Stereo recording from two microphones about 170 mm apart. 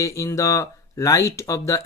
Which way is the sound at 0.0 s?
20° left (ahead or behind).